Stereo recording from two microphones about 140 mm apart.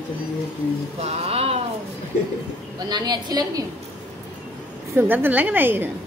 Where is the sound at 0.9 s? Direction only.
45° right (ahead or behind).